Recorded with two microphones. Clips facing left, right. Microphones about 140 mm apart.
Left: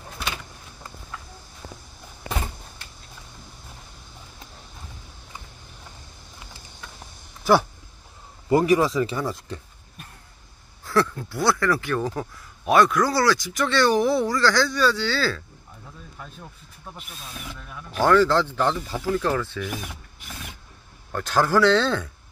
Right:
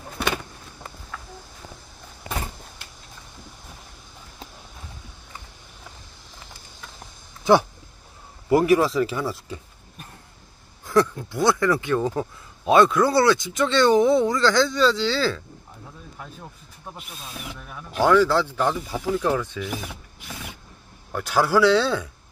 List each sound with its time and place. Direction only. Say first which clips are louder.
8.5 s speech: right 1 dB; 5° right (ahead or behind)
10.9 s speech: right 2 dB; 20° right (ahead or behind)
16.9 s speech: right 1 dB; 5° right (ahead or behind)
21.1 s speech: even; 10° right (ahead or behind)